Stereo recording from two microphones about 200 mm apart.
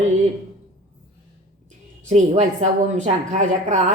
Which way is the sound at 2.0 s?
35° right (ahead or behind).